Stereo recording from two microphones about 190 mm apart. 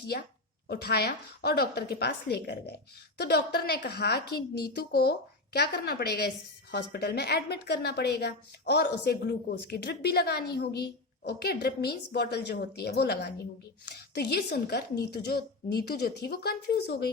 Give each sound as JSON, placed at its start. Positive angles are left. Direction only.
{"t": 0.7, "sound": "a woman's voice", "side_deg": 60}